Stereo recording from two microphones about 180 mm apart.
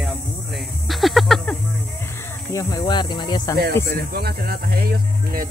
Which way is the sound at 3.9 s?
60° right (ahead or behind).